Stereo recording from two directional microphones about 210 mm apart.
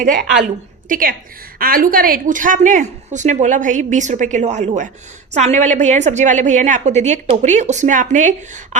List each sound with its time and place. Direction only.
0.0 s a woman's voice: 40° right (ahead or behind)